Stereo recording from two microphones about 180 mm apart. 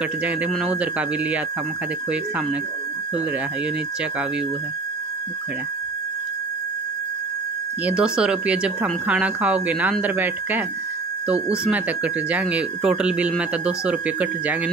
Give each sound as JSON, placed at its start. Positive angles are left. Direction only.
{"t": 0.2, "sound": "speech", "side_deg": -5}
{"t": 7.8, "sound": "speech", "side_deg": -5}